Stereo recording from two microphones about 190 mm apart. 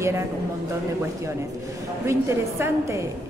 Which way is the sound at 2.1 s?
15° right (ahead or behind).